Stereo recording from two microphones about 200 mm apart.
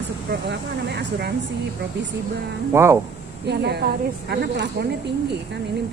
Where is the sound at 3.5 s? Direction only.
55° right (ahead or behind).